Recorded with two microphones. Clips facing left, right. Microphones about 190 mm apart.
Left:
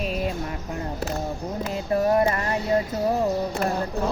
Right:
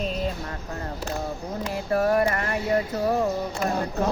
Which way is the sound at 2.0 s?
20° left (ahead or behind).